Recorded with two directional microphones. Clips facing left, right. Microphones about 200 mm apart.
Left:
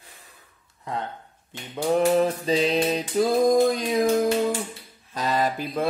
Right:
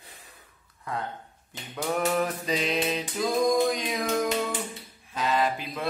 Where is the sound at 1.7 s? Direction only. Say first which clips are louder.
Left 6 dB; 25° left (ahead or behind).